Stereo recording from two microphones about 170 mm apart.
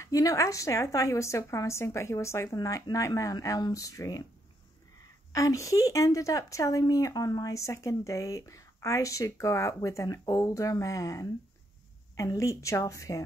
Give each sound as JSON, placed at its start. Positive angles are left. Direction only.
{"t": 0.0, "sound": "speech", "side_deg": 20}
{"t": 5.3, "sound": "speech", "side_deg": 20}